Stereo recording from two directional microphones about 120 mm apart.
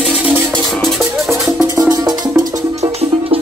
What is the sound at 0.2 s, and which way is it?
Music, 15° right (ahead or behind).